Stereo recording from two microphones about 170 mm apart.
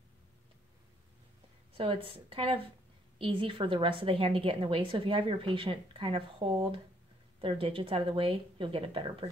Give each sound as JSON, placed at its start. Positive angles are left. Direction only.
{"t": 1.8, "sound": "a woman's voice", "side_deg": -30}